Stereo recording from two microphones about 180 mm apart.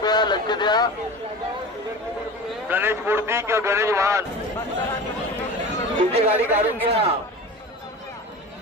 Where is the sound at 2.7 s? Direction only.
10° right (ahead or behind).